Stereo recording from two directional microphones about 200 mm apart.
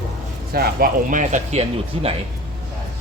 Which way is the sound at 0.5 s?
45° right (ahead or behind).